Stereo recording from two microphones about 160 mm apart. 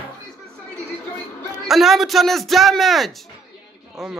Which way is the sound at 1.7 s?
Centre (ahead or behind).